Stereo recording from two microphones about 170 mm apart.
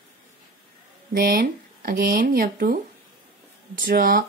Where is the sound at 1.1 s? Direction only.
60° right (ahead or behind).